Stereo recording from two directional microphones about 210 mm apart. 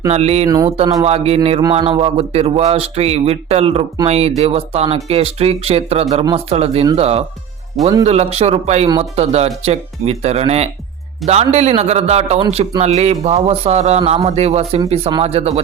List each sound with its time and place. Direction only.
0.1 s a man's voice: 30° right (ahead or behind)
0.4 s speech: 20° right (ahead or behind)
1.0 s a man's voice: 30° right (ahead or behind)